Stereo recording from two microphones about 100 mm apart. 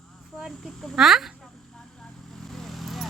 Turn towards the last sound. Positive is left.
turn(degrees=0)  # may be behind; listen again after turning